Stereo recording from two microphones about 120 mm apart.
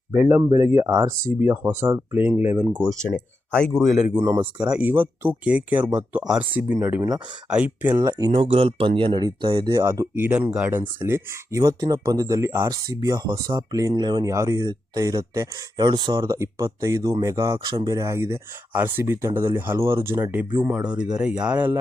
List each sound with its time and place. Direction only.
0.1 s speech: 20° right (ahead or behind)
3.5 s speech: 5° left (ahead or behind)
4.1 s speech: 15° right (ahead or behind)
7.9 s speech: 30° right (ahead or behind)
8.3 s speech: 50° right (ahead or behind); by 20.7 s 25° right (ahead or behind)
20.7 s speech: 10° right (ahead or behind)